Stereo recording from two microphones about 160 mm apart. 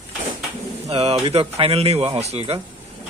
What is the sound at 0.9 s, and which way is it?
Speech, 40° right (ahead or behind).